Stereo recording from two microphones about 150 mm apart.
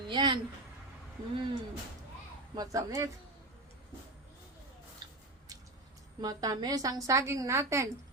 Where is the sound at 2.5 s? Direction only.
20° right (ahead or behind).